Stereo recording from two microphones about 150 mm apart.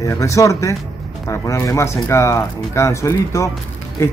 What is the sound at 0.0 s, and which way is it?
Speech, 20° left (ahead or behind).